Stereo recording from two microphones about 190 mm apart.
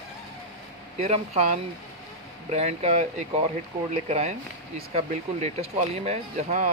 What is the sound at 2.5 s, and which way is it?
Speech, 35° right (ahead or behind).